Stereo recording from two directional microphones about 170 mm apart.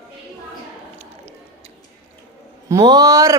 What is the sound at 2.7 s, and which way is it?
Speech, 20° right (ahead or behind).